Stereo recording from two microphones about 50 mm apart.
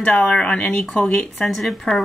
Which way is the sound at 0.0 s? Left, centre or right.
Left.